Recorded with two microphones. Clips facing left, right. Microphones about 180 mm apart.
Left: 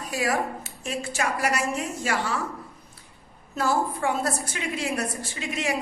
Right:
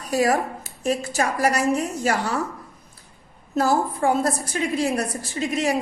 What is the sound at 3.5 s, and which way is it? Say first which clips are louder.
A woman's voice: right 4 dB; 40° right (ahead or behind).